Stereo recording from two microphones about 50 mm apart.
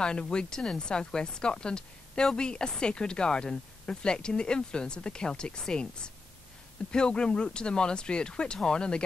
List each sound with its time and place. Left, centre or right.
0.0 s speech: centre